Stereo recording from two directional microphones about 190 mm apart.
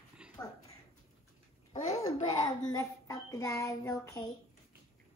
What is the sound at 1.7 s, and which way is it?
Babbling, 35° left (ahead or behind).